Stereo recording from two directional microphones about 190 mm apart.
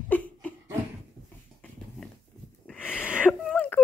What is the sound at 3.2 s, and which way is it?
Whimper, 5° left (ahead or behind).